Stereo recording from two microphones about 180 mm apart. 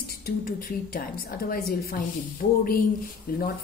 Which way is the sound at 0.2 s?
55° left (ahead or behind).